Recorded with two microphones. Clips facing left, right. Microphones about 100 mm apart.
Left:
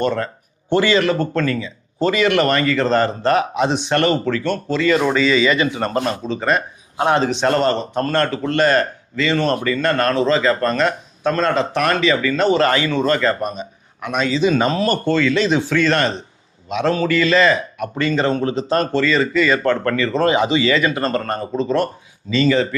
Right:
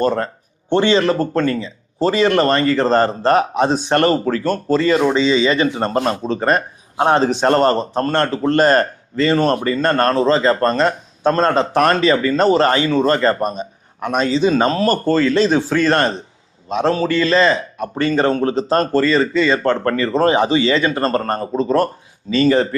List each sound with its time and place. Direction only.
0.0 s speech: 35° right (ahead or behind)